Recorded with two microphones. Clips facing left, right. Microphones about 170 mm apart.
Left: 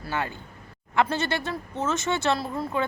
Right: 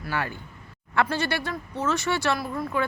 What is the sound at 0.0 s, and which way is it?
Speech, 20° left (ahead or behind).